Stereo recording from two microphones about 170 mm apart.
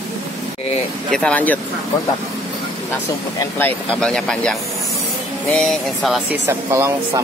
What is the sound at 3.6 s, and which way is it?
Speech, 10° left (ahead or behind).